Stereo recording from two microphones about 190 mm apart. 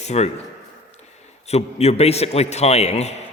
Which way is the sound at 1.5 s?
35° left (ahead or behind).